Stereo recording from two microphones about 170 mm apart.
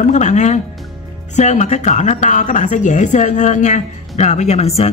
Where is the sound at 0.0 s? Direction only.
45° left (ahead or behind).